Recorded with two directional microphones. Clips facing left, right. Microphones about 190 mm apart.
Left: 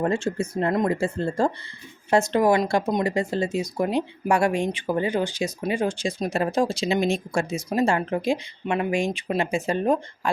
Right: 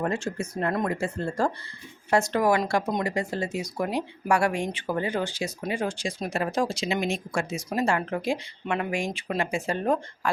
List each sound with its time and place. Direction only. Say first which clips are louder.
0.0 s speech: left 4 dB; 30° left (ahead or behind)
0.7 s speech: left 5 dB; 15° left (ahead or behind)
0.9 s speech: left 4 dB; 30° left (ahead or behind)